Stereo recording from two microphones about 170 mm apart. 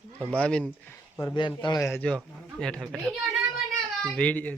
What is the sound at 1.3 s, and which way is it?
A man's voice, 30° left (ahead or behind).